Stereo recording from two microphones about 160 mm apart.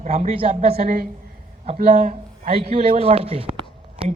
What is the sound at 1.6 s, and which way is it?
Speech, 55° right (ahead or behind).